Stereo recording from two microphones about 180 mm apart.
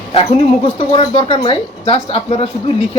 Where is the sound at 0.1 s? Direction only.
35° left (ahead or behind).